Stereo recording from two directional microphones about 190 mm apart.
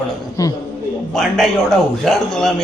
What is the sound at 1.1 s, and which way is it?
Speech, centre (ahead or behind).